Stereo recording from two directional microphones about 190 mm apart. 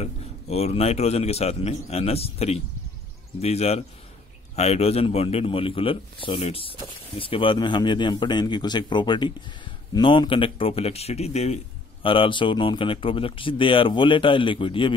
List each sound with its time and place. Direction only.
0.0 s a man's voice: 35° left (ahead or behind)